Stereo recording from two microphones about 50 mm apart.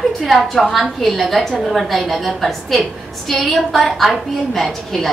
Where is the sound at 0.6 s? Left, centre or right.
Centre.